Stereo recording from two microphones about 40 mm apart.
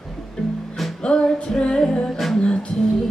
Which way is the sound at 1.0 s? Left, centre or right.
Left.